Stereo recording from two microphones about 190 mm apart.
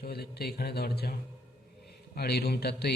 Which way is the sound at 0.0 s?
55° left (ahead or behind).